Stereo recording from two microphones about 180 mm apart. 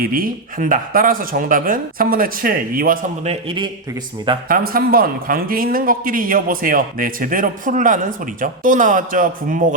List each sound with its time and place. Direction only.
0.0 s speech: 55° right (ahead or behind)
3.2 s a man's voice: 25° right (ahead or behind)
4.4 s speech: 55° right (ahead or behind)